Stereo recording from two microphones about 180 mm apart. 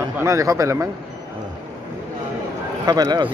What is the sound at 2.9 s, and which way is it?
Speech, 20° right (ahead or behind).